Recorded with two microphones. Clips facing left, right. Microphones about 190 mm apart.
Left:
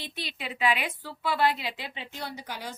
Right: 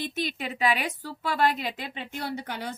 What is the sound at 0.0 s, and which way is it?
A woman's voice, 45° right (ahead or behind).